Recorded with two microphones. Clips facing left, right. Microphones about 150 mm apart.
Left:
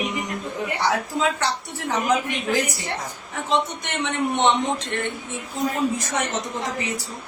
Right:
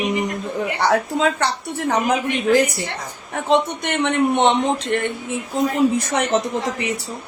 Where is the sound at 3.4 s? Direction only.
60° right (ahead or behind).